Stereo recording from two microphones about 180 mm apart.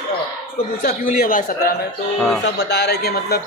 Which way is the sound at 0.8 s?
50° left (ahead or behind).